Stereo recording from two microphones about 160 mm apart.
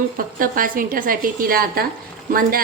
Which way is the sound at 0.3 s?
60° right (ahead or behind).